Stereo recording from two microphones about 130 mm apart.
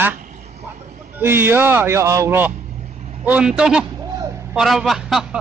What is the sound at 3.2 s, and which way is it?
A man's voice, 10° right (ahead or behind).